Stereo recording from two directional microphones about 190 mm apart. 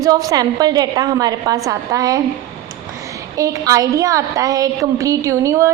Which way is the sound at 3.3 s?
20° right (ahead or behind).